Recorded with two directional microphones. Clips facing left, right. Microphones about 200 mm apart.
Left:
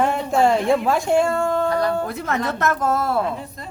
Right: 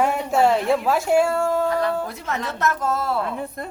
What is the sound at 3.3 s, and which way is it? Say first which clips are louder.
Speech: right 1 dB; 55° right (ahead or behind).